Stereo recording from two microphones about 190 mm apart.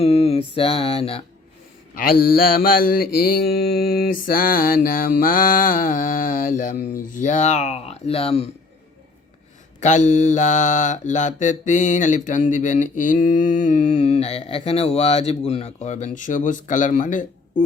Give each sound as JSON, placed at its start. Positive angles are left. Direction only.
{"t": 0.0, "sound": "mantra", "side_deg": 30}
{"t": 2.0, "sound": "mantra", "side_deg": 50}
{"t": 9.8, "sound": "mantra", "side_deg": 40}